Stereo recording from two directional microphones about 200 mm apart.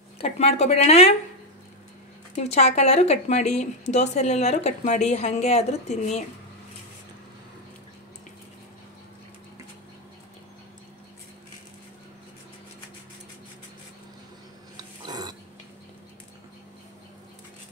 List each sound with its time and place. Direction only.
0.2 s a woman's voice: 35° left (ahead or behind)
2.3 s a woman's voice: 35° left (ahead or behind)
14.8 s burping: 20° right (ahead or behind)